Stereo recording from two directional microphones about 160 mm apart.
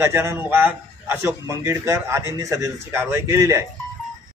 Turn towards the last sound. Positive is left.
turn(degrees=-20)  # may be behind; listen again after turning